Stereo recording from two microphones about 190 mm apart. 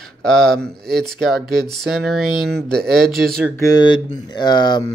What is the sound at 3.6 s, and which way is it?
Speech, 20° left (ahead or behind).